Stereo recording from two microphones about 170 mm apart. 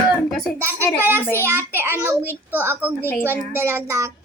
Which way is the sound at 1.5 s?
15° right (ahead or behind).